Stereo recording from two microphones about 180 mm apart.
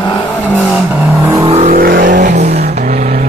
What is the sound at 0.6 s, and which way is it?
Vehicle, 5° right (ahead or behind).